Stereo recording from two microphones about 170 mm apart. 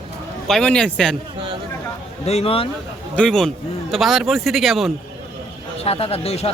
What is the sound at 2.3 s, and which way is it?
Speech, 35° left (ahead or behind).